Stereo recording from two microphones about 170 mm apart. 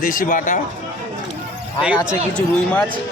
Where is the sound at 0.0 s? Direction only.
50° left (ahead or behind).